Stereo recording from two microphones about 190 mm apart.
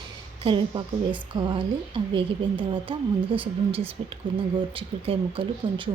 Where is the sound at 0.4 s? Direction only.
25° right (ahead or behind).